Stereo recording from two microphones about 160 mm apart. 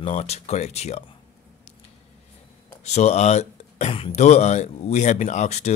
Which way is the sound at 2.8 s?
45° left (ahead or behind).